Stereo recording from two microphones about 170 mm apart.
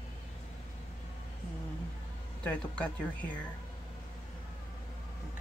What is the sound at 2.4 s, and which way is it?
Speech, 5° left (ahead or behind).